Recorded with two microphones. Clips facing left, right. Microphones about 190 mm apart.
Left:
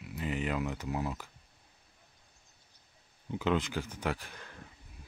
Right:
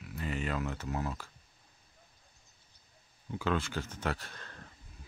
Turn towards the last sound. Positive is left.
turn(degrees=10)  # may be behind; listen again after turning